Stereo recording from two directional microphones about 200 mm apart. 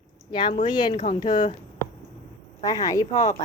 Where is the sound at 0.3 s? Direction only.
25° left (ahead or behind).